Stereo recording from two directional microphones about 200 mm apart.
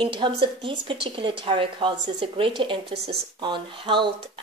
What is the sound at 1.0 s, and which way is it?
Speech, 25° right (ahead or behind).